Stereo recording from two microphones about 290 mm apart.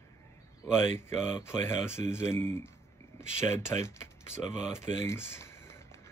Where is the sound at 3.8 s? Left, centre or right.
Centre.